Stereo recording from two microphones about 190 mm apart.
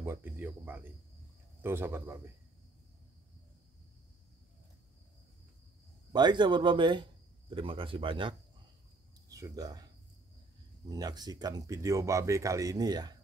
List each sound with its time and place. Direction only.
0.0 s speech: 10° right (ahead or behind)
6.1 s speech: 25° right (ahead or behind)
10.9 s speech: 20° right (ahead or behind)